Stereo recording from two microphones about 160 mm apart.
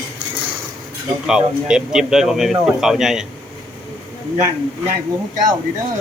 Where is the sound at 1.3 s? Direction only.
5° right (ahead or behind).